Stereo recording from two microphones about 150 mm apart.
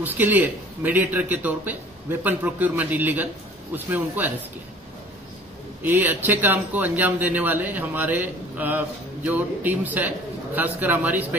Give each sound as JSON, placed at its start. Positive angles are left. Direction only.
{"t": 0.0, "sound": "speech", "side_deg": -10}
{"t": 5.8, "sound": "speech", "side_deg": -10}